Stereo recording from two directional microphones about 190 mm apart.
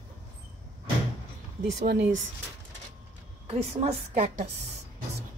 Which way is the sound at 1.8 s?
60° right (ahead or behind).